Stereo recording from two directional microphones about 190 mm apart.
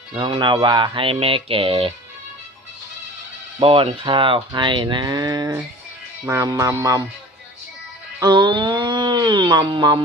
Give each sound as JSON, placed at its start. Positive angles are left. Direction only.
{"t": 0.2, "sound": "speech", "side_deg": -25}
{"t": 3.6, "sound": "speech", "side_deg": -30}
{"t": 8.2, "sound": "a sound", "side_deg": -25}